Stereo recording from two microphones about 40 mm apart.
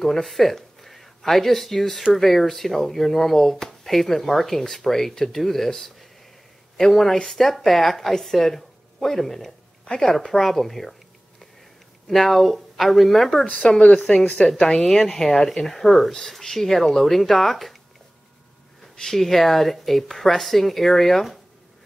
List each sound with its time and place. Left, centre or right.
0.0 s a woman's voice: centre
12.1 s speech: centre
13.7 s a woman's voice: left; by 17.7 s centre
18.9 s speech: centre